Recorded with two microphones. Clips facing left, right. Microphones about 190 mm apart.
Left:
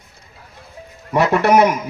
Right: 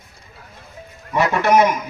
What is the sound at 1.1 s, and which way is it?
Speech, 60° left (ahead or behind).